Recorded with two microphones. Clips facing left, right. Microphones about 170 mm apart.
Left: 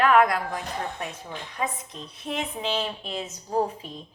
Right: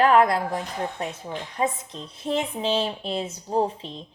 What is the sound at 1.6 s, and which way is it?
A woman's voice, 25° right (ahead or behind).